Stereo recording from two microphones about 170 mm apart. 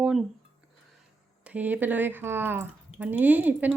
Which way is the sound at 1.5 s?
10° right (ahead or behind).